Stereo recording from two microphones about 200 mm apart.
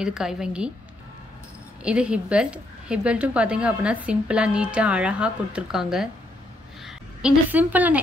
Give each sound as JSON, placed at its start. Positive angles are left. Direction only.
{"t": 0.0, "sound": "a woman's voice", "side_deg": -5}
{"t": 1.8, "sound": "a woman's voice", "side_deg": -5}